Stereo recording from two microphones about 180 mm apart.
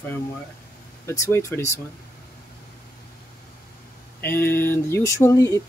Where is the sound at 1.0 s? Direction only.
15° left (ahead or behind).